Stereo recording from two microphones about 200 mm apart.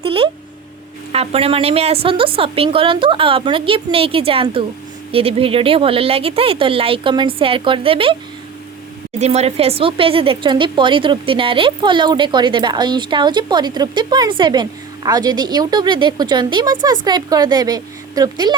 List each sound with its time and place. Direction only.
0.0 s a sound: 30° right (ahead or behind)
1.1 s speech: 30° right (ahead or behind)
9.2 s speech: 30° right (ahead or behind)